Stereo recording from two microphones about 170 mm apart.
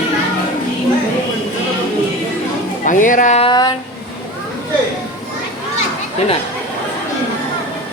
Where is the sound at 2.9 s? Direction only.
50° left (ahead or behind).